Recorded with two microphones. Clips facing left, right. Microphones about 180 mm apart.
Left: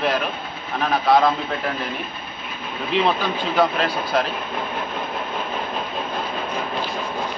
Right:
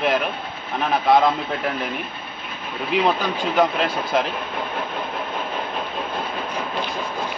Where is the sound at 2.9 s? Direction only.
10° right (ahead or behind).